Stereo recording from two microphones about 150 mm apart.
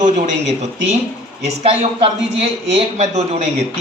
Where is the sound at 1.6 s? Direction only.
40° right (ahead or behind).